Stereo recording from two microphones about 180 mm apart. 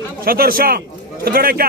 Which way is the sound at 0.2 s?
55° right (ahead or behind).